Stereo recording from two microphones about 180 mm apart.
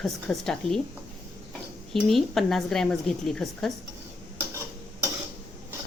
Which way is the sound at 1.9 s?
Centre (ahead or behind).